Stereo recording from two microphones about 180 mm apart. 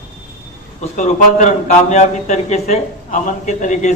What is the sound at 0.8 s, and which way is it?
A man's voice, 40° left (ahead or behind).